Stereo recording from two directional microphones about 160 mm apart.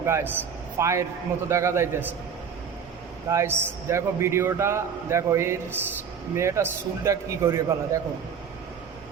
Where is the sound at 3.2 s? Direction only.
15° right (ahead or behind).